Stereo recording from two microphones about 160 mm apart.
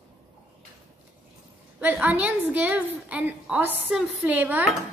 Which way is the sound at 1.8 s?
10° right (ahead or behind).